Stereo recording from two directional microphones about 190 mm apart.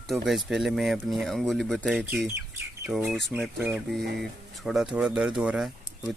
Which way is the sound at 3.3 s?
10° right (ahead or behind).